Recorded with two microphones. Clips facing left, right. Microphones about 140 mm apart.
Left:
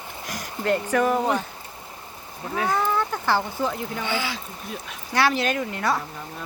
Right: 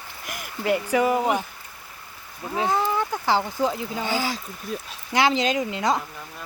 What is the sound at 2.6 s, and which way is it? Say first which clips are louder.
Speech: right 1 dB; 25° right (ahead or behind).